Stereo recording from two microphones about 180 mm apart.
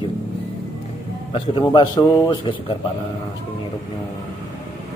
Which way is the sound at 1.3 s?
25° left (ahead or behind).